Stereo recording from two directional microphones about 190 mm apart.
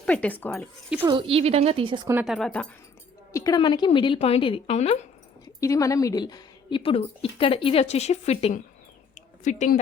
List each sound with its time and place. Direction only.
0.0 s speech: 5° left (ahead or behind)
1.0 s speech: 25° right (ahead or behind)
2.2 s speech: centre (ahead or behind)
3.3 s a woman's voice: 20° left (ahead or behind); by 5.0 s 35° left (ahead or behind)
5.5 s a woman's voice: 15° left (ahead or behind); by 8.6 s 30° left (ahead or behind)
9.1 s a sound: 40° left (ahead or behind)